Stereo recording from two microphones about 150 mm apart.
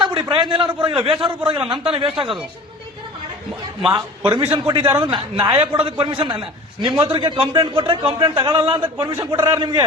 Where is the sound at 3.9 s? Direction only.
30° right (ahead or behind).